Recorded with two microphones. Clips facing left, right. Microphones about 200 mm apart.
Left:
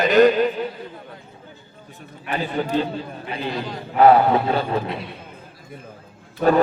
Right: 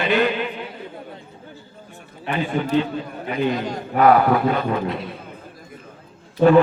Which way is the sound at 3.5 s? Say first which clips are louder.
Right 3 dB; 45° right (ahead or behind).